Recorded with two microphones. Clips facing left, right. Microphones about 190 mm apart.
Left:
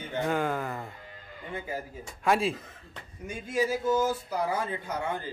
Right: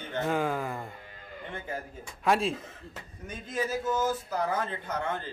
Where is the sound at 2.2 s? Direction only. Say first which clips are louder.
Even; centre (ahead or behind).